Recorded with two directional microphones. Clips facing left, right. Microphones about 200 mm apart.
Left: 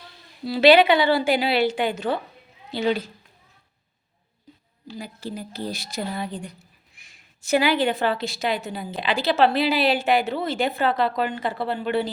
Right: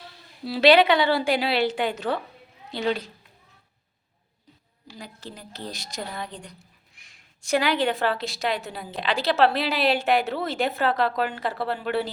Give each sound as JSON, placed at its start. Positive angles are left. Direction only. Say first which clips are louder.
{"t": 0.4, "sound": "a woman's voice", "louder": "left 2 dB", "side_deg": 0}
{"t": 4.9, "sound": "a woman's voice", "louder": "left 7 dB", "side_deg": 10}